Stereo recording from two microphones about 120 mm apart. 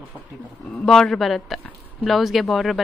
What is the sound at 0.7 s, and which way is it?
Speech, 5° left (ahead or behind).